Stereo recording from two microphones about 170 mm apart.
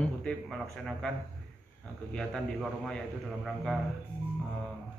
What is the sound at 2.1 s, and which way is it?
A man's voice, centre (ahead or behind).